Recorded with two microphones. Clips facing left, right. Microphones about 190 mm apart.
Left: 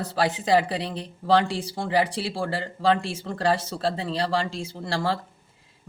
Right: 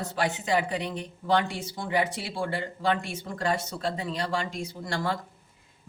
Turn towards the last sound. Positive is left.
turn(degrees=30)  # may be behind; listen again after turning